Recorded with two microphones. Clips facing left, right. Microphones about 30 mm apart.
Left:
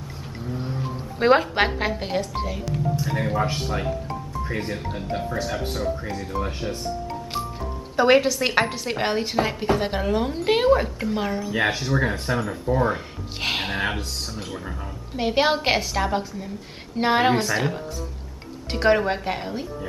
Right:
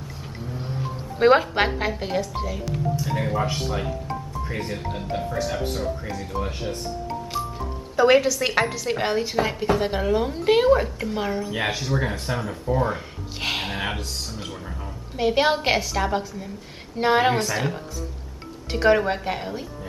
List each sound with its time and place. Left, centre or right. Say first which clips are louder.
0.5 s a woman's voice: left 2 dB; centre
7.9 s a woman's voice: even; centre
15.1 s a woman's voice: right 1 dB; centre